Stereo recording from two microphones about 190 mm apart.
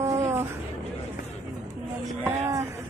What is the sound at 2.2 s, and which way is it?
Speech, 15° right (ahead or behind).